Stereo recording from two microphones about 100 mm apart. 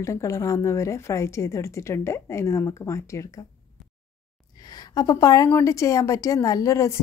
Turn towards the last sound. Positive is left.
turn(degrees=30)  # may be behind; listen again after turning